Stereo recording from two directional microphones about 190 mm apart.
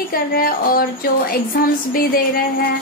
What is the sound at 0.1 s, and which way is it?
Speech, 50° left (ahead or behind).